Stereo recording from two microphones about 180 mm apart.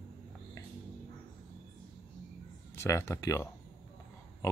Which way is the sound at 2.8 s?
15° left (ahead or behind).